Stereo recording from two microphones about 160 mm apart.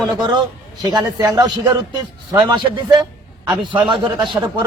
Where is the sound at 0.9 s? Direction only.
25° right (ahead or behind).